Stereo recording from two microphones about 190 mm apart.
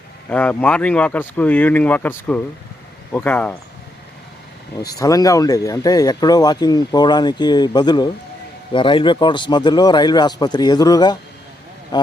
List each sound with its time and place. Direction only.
0.3 s speech: 5° left (ahead or behind)
4.8 s speech: 20° left (ahead or behind)